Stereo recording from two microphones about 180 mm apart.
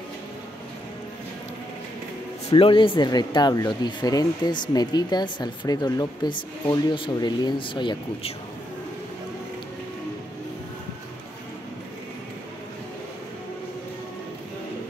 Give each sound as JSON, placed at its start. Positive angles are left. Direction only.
{"t": 2.5, "sound": "speech", "side_deg": 30}